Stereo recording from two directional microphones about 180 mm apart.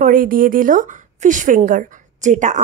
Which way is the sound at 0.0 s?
50° right (ahead or behind).